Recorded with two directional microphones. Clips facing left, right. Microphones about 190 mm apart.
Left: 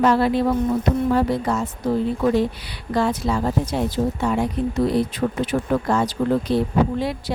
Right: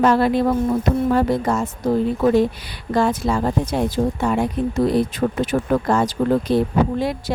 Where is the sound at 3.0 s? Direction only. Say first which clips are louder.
Right 2 dB; 50° right (ahead or behind).